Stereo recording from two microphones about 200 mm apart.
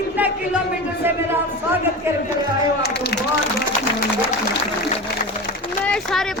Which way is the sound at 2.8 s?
55° left (ahead or behind).